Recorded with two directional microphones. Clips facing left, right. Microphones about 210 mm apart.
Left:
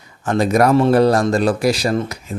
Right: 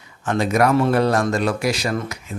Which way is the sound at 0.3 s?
35° left (ahead or behind).